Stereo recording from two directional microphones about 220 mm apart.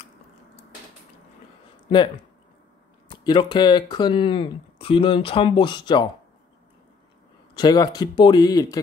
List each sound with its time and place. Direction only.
3.1 s speech: 20° left (ahead or behind)
7.5 s speech: 20° left (ahead or behind)